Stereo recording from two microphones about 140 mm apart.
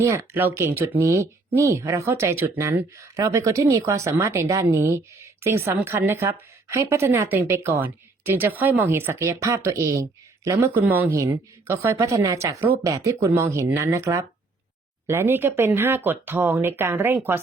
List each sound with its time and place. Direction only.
0.0 s speech: 15° right (ahead or behind)